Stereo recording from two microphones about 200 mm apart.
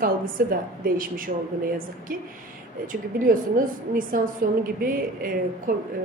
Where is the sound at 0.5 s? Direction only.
45° right (ahead or behind).